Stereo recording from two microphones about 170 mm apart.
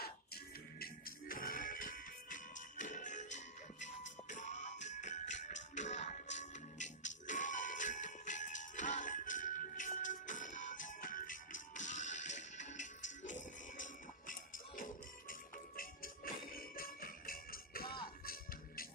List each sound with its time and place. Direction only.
0.0 s music: 65° left (ahead or behind)